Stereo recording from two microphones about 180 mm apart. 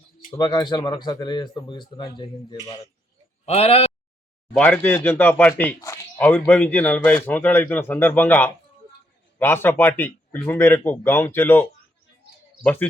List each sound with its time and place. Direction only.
0.3 s speech: 25° left (ahead or behind)
3.4 s speech: 35° left (ahead or behind)
4.5 s speech: 10° left (ahead or behind)
12.6 s speech: 10° left (ahead or behind)